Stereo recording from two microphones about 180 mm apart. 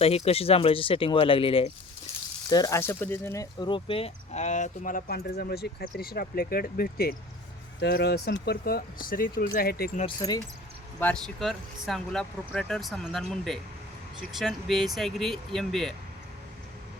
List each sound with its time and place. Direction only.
0.0 s speech: 35° left (ahead or behind)
2.5 s speech: 20° left (ahead or behind); by 9.9 s 55° left (ahead or behind)
10.2 s speech: 20° left (ahead or behind)
11.0 s speech: 5° left (ahead or behind)